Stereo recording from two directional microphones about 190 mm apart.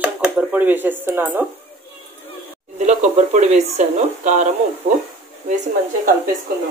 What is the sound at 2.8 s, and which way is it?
Speech, 40° right (ahead or behind).